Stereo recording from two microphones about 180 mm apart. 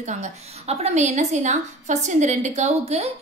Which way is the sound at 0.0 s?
40° right (ahead or behind).